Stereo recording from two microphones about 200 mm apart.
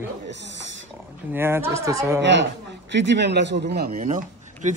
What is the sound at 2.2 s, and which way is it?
A man's voice, 65° right (ahead or behind).